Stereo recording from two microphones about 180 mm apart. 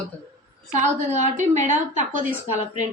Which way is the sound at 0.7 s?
40° right (ahead or behind).